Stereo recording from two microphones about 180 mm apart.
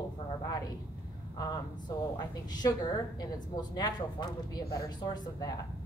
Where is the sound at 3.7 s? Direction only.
20° left (ahead or behind).